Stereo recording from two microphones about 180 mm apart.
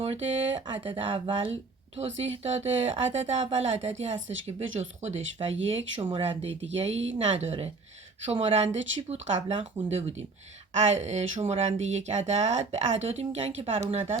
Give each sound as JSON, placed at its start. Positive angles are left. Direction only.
{"t": 0.0, "sound": "speech", "side_deg": -35}